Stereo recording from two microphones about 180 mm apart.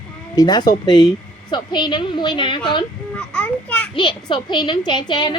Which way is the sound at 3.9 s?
25° left (ahead or behind).